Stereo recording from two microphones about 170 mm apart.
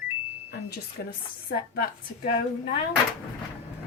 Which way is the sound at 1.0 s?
60° left (ahead or behind).